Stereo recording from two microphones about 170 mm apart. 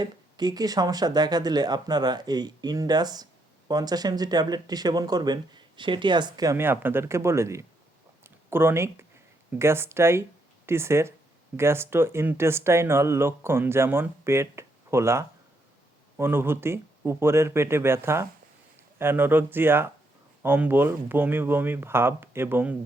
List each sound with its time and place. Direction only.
0.0 s speech: 25° right (ahead or behind)